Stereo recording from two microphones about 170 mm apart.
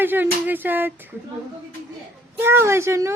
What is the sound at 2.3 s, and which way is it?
Speech, 15° right (ahead or behind).